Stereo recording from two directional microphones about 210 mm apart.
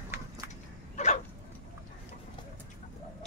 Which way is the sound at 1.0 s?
35° left (ahead or behind).